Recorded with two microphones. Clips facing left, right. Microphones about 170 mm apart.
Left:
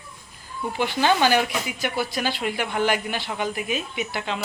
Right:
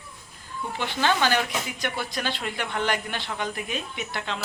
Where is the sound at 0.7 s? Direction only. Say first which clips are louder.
Left 4 dB; 10° left (ahead or behind).